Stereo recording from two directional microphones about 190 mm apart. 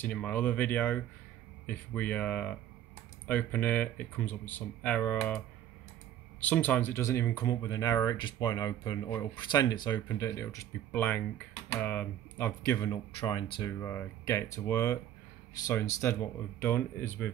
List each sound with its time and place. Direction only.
0.0 s speech: 5° left (ahead or behind)
6.4 s speech: 10° left (ahead or behind)
12.8 s speech: 20° left (ahead or behind)